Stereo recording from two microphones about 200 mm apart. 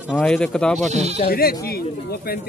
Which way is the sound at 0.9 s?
35° right (ahead or behind).